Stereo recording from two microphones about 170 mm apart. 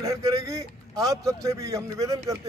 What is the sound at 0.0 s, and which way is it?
Speech, 20° right (ahead or behind).